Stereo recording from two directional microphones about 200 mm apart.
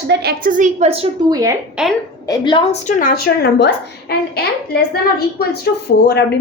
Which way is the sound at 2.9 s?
40° left (ahead or behind).